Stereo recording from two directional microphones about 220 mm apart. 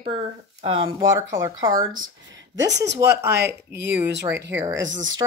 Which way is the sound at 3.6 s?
50° right (ahead or behind).